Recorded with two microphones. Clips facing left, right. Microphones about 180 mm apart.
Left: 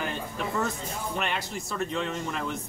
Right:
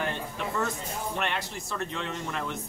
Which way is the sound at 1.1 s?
5° left (ahead or behind).